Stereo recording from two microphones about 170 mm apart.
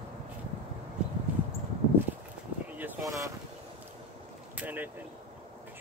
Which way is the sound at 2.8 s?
20° right (ahead or behind).